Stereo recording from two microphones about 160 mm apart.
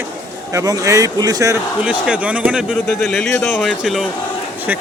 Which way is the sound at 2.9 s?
10° left (ahead or behind).